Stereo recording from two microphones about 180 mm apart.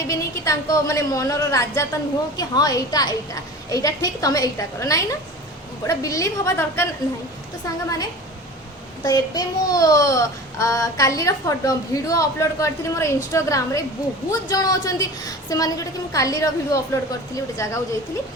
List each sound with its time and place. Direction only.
0.1 s a child's voice: 20° left (ahead or behind)
9.0 s a child's voice: 20° left (ahead or behind)